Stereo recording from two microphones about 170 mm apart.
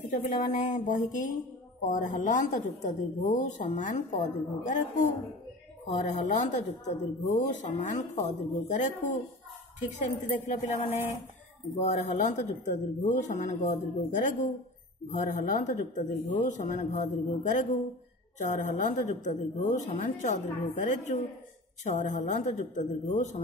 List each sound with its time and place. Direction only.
0.1 s speech: 45° left (ahead or behind)